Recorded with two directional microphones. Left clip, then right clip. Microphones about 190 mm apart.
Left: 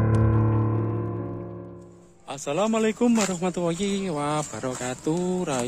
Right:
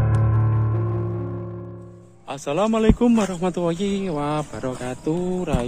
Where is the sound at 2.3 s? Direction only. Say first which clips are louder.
Right 3 dB; 10° left (ahead or behind).